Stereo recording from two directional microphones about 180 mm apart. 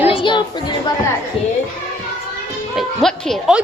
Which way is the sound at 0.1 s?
25° left (ahead or behind).